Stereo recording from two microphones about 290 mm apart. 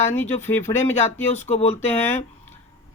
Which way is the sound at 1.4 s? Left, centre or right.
Left.